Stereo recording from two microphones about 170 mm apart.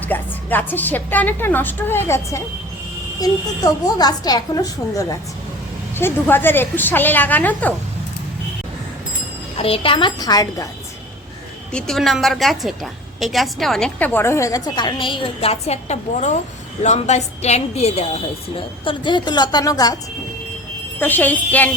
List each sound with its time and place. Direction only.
0.0 s a woman's voice: 10° left (ahead or behind)
9.6 s a woman's voice: 35° left (ahead or behind)
11.7 s a woman's voice: 5° left (ahead or behind); by 18.2 s 40° left (ahead or behind)
18.9 s a woman's voice: 25° left (ahead or behind)
21.0 s a woman's voice: 10° left (ahead or behind)